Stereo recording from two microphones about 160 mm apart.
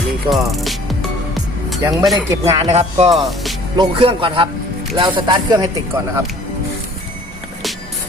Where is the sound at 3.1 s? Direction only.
Centre (ahead or behind).